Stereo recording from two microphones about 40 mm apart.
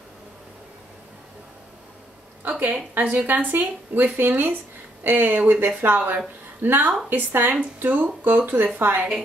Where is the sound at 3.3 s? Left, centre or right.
Right.